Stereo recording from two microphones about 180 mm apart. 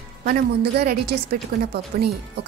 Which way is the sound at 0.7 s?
65° right (ahead or behind).